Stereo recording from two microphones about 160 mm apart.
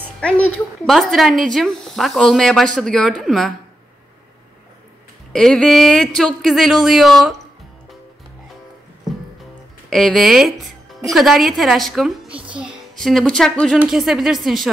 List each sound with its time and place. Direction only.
0.8 s a woman's voice: centre (ahead or behind)
5.3 s a woman's voice: 5° left (ahead or behind)
9.8 s a child's voice: centre (ahead or behind)